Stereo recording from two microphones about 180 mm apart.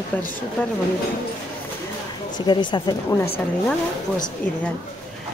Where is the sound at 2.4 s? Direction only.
25° left (ahead or behind).